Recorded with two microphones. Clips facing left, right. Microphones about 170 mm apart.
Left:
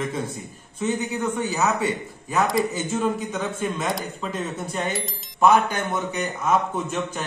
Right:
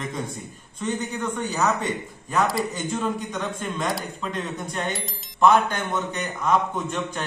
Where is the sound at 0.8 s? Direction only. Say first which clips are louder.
Left 3 dB; 5° left (ahead or behind).